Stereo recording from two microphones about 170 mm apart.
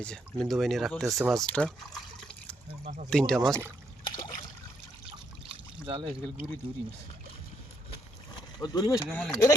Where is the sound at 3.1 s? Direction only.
5° left (ahead or behind).